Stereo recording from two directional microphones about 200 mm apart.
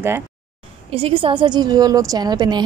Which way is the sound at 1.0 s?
25° right (ahead or behind).